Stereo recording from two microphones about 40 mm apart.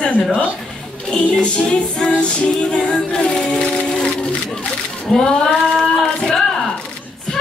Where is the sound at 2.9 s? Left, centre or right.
Centre.